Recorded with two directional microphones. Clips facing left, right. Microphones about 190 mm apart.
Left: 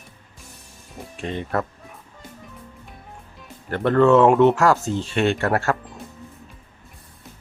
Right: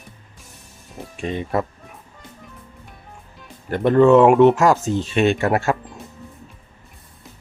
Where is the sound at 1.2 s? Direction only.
15° right (ahead or behind).